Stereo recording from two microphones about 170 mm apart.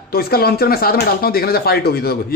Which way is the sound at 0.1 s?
65° left (ahead or behind).